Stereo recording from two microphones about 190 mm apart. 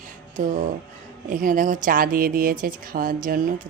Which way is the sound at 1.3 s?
45° right (ahead or behind).